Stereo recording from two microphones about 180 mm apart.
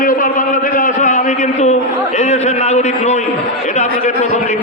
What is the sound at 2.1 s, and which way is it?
A man's voice, 40° left (ahead or behind).